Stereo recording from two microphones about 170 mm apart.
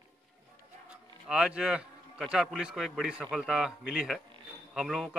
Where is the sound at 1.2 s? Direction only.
5° right (ahead or behind).